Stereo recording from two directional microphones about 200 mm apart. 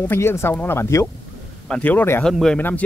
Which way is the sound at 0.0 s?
10° left (ahead or behind).